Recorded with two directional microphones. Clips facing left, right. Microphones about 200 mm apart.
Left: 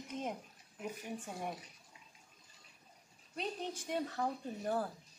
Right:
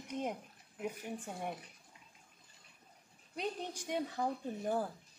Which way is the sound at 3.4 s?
15° right (ahead or behind).